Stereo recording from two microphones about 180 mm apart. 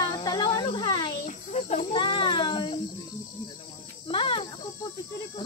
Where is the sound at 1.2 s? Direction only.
40° left (ahead or behind).